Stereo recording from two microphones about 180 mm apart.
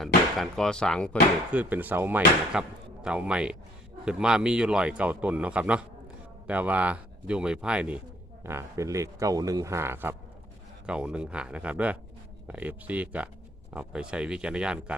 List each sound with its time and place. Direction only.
0.0 s speech: centre (ahead or behind)
1.5 s speech: 10° right (ahead or behind)